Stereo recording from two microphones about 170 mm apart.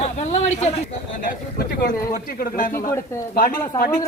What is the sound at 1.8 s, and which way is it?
Speech, 60° left (ahead or behind).